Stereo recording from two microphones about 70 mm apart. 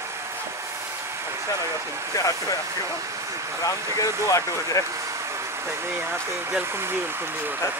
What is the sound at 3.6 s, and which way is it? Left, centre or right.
Speech, left.